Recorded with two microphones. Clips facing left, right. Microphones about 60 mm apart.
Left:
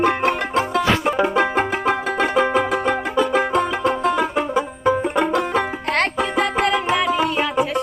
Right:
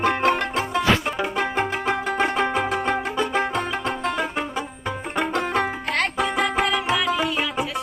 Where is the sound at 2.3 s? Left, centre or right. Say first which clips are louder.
Left 4 dB; centre.